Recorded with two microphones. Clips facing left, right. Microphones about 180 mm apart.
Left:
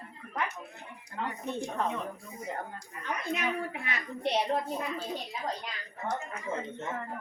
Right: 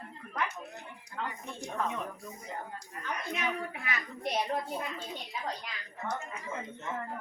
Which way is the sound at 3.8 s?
30° left (ahead or behind).